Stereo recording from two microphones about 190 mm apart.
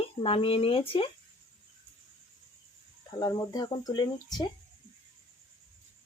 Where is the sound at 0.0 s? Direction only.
30° left (ahead or behind).